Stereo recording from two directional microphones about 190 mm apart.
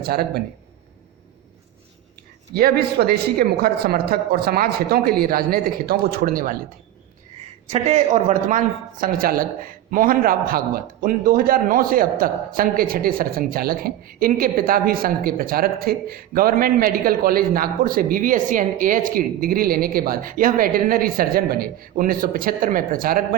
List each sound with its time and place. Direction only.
0.0 s speech: 55° right (ahead or behind)
2.6 s speech: 55° right (ahead or behind)
7.7 s speech: 35° right (ahead or behind)